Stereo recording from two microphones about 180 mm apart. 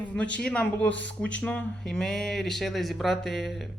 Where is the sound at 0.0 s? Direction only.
10° left (ahead or behind).